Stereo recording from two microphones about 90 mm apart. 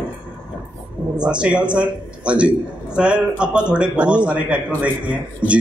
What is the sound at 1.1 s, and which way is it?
A man's voice, 10° right (ahead or behind).